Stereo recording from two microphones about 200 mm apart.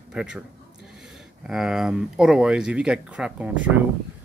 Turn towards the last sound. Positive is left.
turn(degrees=-5)  # may be behind; listen again after turning